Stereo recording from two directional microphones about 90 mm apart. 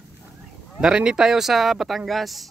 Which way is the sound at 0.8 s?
10° right (ahead or behind).